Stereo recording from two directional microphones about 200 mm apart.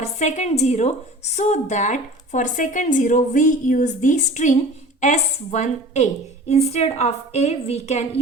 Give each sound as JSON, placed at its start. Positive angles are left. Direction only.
{"t": 0.0, "sound": "a woman's voice", "side_deg": 35}